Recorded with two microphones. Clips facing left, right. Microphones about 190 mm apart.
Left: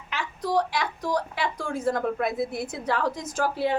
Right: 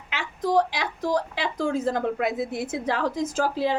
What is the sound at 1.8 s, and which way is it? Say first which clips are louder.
A woman's voice: right 1 dB; 20° right (ahead or behind).